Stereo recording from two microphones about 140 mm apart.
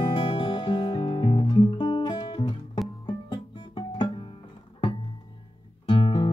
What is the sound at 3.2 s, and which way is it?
Guitar, 30° left (ahead or behind).